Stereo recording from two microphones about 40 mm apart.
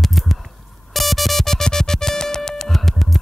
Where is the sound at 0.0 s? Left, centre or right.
Centre.